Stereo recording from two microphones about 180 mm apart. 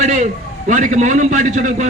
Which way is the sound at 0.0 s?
40° right (ahead or behind).